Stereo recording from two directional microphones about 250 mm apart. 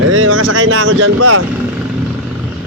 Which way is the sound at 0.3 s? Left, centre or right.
Right.